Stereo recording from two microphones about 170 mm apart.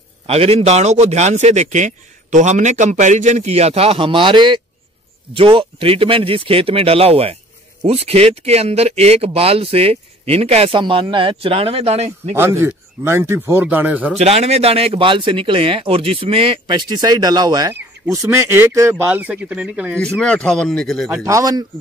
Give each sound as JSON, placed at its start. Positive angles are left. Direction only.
{"t": 0.3, "sound": "speech", "side_deg": -35}
{"t": 12.4, "sound": "speech", "side_deg": -15}
{"t": 14.1, "sound": "speech", "side_deg": -40}
{"t": 20.0, "sound": "speech", "side_deg": 5}
{"t": 21.1, "sound": "speech", "side_deg": -20}